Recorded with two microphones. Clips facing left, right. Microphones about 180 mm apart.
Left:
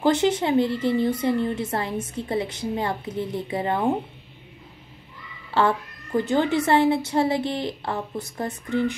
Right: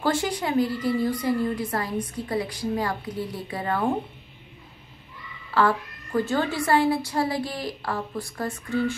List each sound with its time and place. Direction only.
0.0 s a woman's voice: 20° left (ahead or behind)
5.5 s a woman's voice: 25° left (ahead or behind)